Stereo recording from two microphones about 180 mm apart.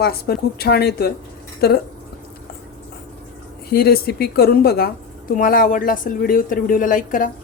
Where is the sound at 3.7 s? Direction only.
60° left (ahead or behind).